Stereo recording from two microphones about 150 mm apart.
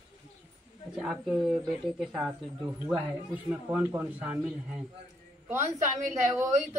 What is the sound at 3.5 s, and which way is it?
Speech, 10° right (ahead or behind).